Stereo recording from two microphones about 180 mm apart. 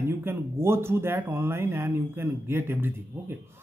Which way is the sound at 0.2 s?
15° right (ahead or behind).